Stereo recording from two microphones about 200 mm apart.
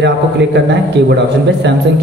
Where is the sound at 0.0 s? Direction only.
60° right (ahead or behind).